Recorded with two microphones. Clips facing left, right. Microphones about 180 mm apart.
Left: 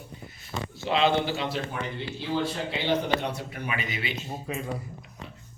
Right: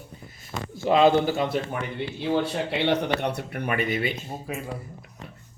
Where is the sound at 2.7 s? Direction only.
65° right (ahead or behind); by 4.1 s 50° right (ahead or behind).